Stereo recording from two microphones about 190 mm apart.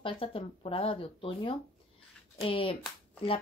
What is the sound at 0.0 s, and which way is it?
A woman's voice, 30° left (ahead or behind).